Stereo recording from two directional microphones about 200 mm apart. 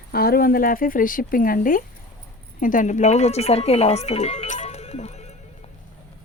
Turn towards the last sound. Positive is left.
turn(degrees=35)  # may be behind; listen again after turning